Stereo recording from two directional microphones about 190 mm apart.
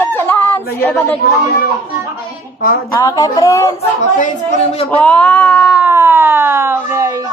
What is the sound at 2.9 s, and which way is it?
Speech, 15° left (ahead or behind).